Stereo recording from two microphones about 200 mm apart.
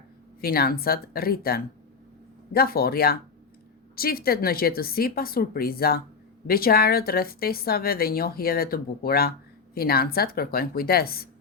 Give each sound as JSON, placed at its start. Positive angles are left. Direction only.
{"t": 0.4, "sound": "a woman's voice", "side_deg": 50}